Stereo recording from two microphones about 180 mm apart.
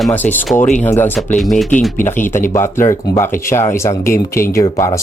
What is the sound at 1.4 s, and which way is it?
Speech, centre (ahead or behind).